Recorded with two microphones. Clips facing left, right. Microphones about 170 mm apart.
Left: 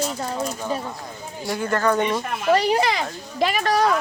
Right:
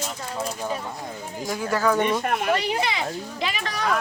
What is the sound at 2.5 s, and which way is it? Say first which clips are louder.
Speech: left 11 dB; 40° left (ahead or behind).